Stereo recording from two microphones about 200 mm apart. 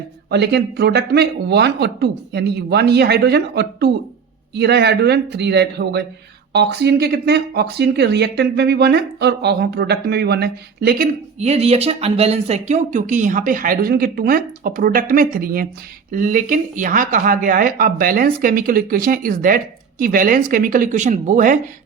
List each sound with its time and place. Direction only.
0.3 s speech: 55° right (ahead or behind)
11.3 s speech: 30° right (ahead or behind)